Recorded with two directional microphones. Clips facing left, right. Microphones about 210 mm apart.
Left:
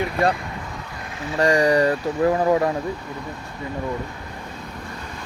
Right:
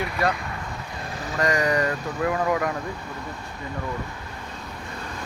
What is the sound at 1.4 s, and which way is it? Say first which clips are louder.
Speech: left 6 dB; 30° left (ahead or behind).